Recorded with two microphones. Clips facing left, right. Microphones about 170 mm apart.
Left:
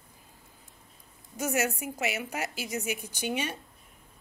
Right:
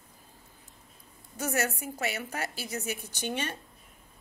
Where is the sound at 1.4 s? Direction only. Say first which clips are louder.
Left 2 dB; 10° left (ahead or behind).